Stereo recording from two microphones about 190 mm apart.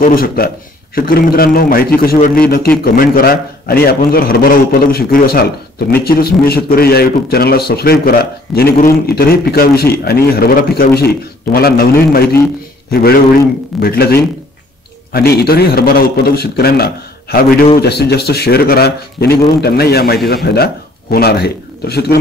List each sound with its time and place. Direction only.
0.0 s a man's voice: 50° left (ahead or behind)